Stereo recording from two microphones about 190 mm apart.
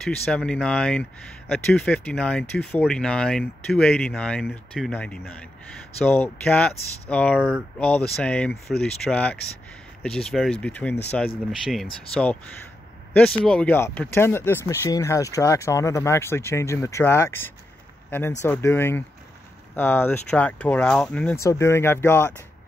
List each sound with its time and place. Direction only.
0.0 s speech: 5° left (ahead or behind)
13.4 s speech: 5° left (ahead or behind)